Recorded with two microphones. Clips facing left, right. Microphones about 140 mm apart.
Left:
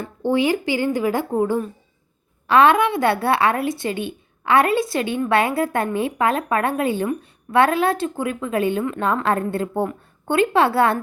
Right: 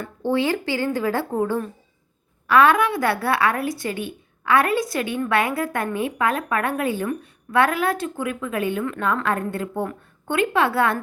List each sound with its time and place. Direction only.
0.0 s a woman's voice: 15° left (ahead or behind)
2.5 s a woman's voice: 25° left (ahead or behind)